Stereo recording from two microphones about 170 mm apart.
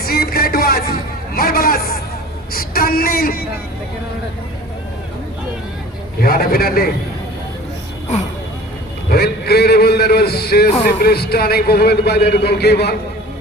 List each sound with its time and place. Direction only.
0.0 s music: 65° left (ahead or behind)
1.4 s hubbub: 60° left (ahead or behind)
2.5 s a woman's voice: 60° left (ahead or behind)
6.1 s a man's voice: 60° left (ahead or behind)
9.0 s a sound: 65° left (ahead or behind)
10.8 s a man's voice: 65° left (ahead or behind)